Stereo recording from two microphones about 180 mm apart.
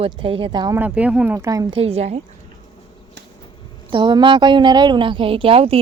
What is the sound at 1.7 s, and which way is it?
Speech, 35° right (ahead or behind).